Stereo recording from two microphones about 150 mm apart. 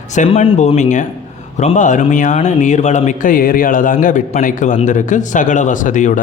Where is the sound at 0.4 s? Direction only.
40° left (ahead or behind).